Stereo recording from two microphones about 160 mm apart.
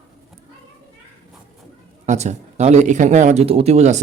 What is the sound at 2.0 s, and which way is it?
Speech, 45° right (ahead or behind).